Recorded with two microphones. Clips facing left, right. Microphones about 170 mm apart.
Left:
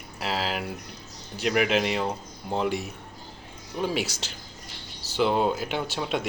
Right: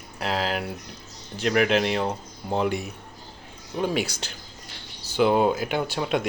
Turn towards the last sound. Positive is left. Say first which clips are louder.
# right 3 dB
turn(degrees=0)  # may be behind; listen again after turning